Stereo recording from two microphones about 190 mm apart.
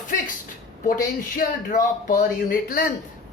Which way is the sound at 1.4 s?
45° left (ahead or behind).